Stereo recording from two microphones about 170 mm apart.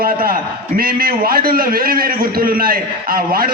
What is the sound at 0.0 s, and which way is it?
A man's voice, 60° right (ahead or behind).